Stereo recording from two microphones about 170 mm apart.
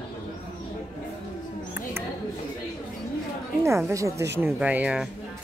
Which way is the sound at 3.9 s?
20° right (ahead or behind).